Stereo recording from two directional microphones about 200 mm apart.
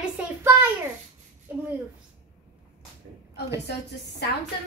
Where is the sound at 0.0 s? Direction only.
10° right (ahead or behind).